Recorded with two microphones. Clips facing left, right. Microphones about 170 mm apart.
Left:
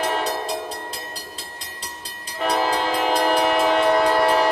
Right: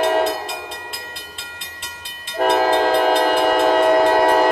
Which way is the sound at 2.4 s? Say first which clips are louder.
Right 6 dB; 50° right (ahead or behind).